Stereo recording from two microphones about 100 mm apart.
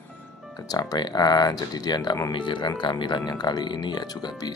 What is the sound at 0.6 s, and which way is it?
Speech, 40° left (ahead or behind).